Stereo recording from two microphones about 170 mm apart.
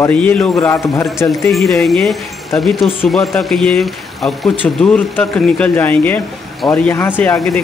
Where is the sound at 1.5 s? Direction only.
Centre (ahead or behind).